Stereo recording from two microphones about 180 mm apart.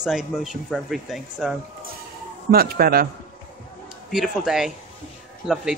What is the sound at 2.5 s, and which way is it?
Speech, 55° right (ahead or behind).